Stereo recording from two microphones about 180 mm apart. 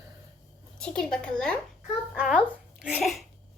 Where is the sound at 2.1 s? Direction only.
5° right (ahead or behind).